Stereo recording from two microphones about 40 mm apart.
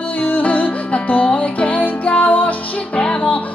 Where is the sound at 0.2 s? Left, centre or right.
Left.